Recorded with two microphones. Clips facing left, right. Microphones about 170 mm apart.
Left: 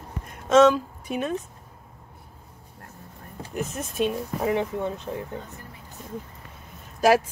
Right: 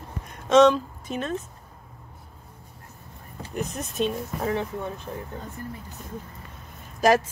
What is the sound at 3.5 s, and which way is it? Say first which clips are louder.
Speech: even; 5° left (ahead or behind).